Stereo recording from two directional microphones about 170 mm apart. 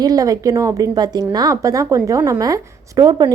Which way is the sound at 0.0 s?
20° right (ahead or behind).